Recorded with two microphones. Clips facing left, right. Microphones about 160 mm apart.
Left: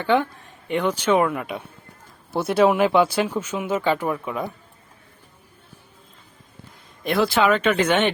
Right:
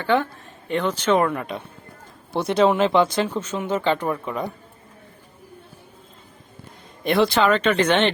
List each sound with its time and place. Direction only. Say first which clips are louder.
0.0 s speech: left 1 dB; 15° left (ahead or behind)
7.0 s speech: right 1 dB; centre (ahead or behind)